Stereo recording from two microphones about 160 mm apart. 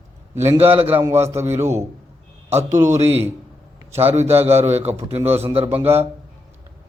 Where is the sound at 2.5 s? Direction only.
45° right (ahead or behind).